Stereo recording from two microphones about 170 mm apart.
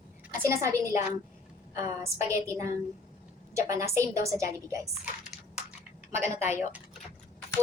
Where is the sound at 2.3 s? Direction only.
15° right (ahead or behind).